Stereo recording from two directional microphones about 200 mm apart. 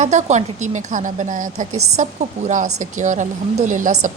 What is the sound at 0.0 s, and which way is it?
A woman's voice, 35° right (ahead or behind).